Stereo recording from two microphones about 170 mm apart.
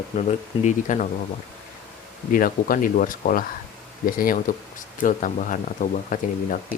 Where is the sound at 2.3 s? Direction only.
55° left (ahead or behind).